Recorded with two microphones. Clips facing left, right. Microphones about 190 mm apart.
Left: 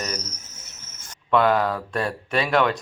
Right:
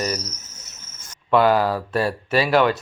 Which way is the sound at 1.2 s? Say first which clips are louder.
Right 2 dB; 5° right (ahead or behind).